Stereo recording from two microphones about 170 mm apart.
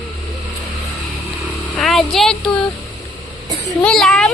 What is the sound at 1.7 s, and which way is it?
Speech, centre (ahead or behind).